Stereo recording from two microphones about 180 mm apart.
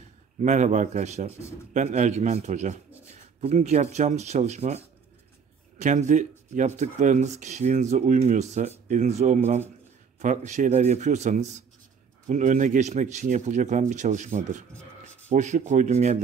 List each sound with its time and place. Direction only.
0.4 s a man's voice: 40° right (ahead or behind)
14.7 s a sound: 5° left (ahead or behind)
15.2 s speech: 40° right (ahead or behind)